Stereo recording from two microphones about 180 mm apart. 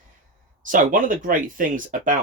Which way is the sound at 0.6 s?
50° right (ahead or behind).